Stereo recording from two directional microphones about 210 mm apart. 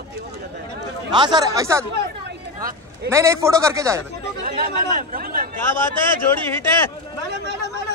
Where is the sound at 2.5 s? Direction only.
40° right (ahead or behind).